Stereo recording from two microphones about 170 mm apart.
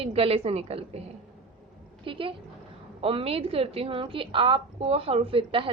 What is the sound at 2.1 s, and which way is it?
A woman's voice, 30° right (ahead or behind).